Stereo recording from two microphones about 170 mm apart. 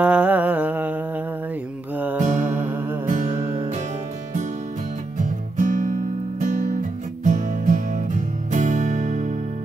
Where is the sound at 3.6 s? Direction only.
45° right (ahead or behind).